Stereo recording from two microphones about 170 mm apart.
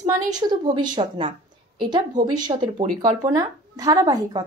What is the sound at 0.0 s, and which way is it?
A woman's voice, 25° right (ahead or behind).